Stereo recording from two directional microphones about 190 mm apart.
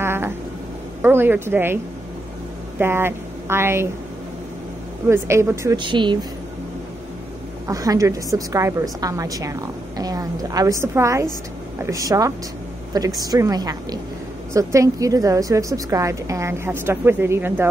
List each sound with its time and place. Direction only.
0.0 s a sound: 10° right (ahead or behind)
1.0 s a woman's voice: 10° right (ahead or behind)
2.8 s speech: 10° right (ahead or behind)
5.0 s a woman's voice: 15° right (ahead or behind)
7.6 s a woman's voice: 20° right (ahead or behind)